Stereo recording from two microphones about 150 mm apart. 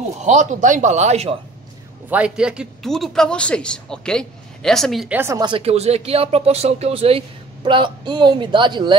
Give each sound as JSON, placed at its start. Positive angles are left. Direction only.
{"t": 0.2, "sound": "speech", "side_deg": -50}
{"t": 2.0, "sound": "speech", "side_deg": -10}
{"t": 5.1, "sound": "speech", "side_deg": -15}
{"t": 5.4, "sound": "speech", "side_deg": -35}